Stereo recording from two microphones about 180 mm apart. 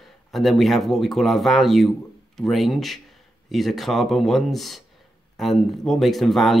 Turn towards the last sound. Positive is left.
turn(degrees=0)  # may be behind; listen again after turning